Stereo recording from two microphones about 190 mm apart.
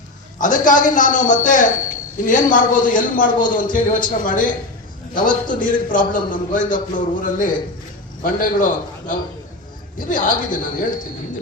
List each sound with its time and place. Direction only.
0.3 s a man's voice: 45° left (ahead or behind)